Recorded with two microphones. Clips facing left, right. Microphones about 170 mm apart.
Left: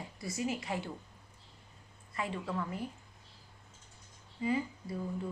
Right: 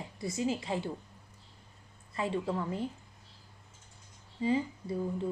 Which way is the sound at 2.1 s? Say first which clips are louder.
Right 4 dB; 30° right (ahead or behind).